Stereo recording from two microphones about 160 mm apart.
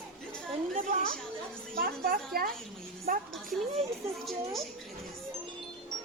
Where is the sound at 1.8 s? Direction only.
65° right (ahead or behind).